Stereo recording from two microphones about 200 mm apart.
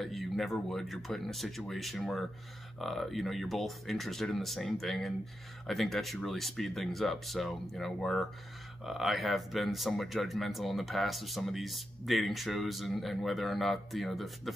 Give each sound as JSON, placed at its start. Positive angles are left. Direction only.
{"t": 0.0, "sound": "speech", "side_deg": 0}